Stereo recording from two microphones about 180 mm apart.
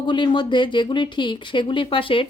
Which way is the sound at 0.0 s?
25° left (ahead or behind).